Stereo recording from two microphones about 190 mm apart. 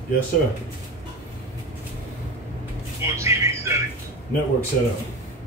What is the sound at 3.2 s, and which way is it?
Speech, 15° right (ahead or behind).